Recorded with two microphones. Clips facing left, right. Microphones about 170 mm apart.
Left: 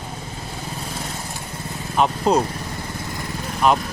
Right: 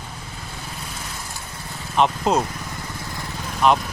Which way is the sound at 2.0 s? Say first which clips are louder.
Left 1 dB; centre (ahead or behind).